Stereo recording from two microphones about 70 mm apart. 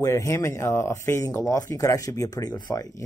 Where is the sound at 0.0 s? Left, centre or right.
Left.